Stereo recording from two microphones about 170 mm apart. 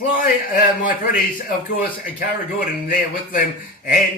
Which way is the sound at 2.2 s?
55° left (ahead or behind).